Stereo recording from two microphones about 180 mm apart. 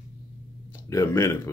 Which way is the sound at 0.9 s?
15° left (ahead or behind).